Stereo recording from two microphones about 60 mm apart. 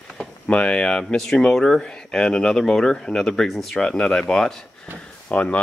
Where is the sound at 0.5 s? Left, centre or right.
Centre.